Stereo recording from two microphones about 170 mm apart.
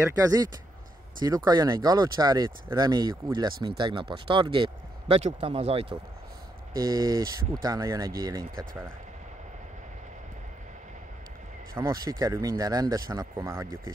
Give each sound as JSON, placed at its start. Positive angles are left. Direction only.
{"t": 0.1, "sound": "speech", "side_deg": -20}
{"t": 6.7, "sound": "speech", "side_deg": -20}
{"t": 11.7, "sound": "speech", "side_deg": -20}